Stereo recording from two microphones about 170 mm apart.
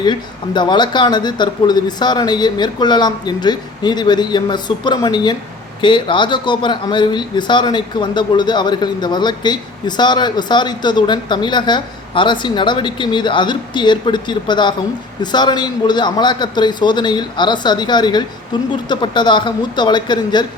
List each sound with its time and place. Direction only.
0.0 s speech: 25° left (ahead or behind)